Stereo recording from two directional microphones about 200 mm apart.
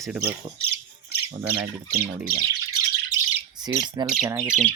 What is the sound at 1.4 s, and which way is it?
Speech, 10° right (ahead or behind).